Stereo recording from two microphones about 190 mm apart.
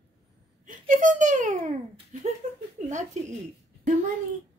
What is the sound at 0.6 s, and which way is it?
A child's voice, 40° right (ahead or behind).